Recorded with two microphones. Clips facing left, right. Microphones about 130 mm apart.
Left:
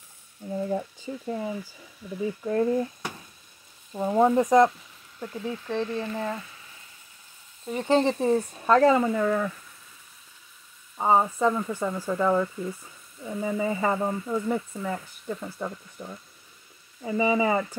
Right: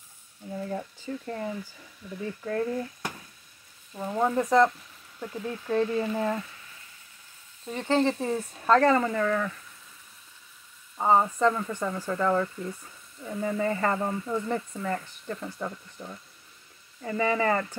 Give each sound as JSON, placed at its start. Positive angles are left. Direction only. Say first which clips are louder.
{"t": 0.5, "sound": "speech", "louder": "left 5 dB", "side_deg": 15}
{"t": 3.9, "sound": "speech", "louder": "left 5 dB", "side_deg": 25}
{"t": 5.2, "sound": "speech", "louder": "left 1 dB", "side_deg": 0}
{"t": 7.6, "sound": "speech", "louder": "left 2 dB", "side_deg": 15}
{"t": 11.0, "sound": "speech", "louder": "even", "side_deg": 10}